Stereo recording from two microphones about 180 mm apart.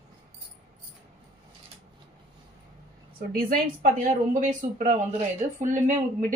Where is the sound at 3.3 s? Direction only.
55° right (ahead or behind).